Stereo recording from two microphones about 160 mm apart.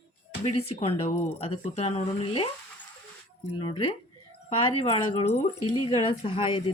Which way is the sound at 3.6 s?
35° left (ahead or behind).